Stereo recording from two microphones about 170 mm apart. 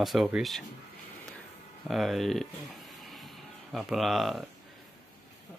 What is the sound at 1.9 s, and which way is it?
Speech, centre (ahead or behind).